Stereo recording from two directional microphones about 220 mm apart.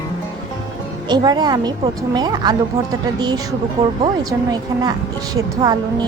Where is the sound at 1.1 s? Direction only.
20° right (ahead or behind).